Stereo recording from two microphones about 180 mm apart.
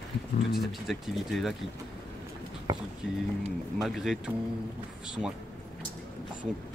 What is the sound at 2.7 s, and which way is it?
Speech, 20° right (ahead or behind).